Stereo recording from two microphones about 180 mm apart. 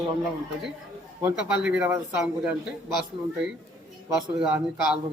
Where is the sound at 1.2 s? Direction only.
5° right (ahead or behind).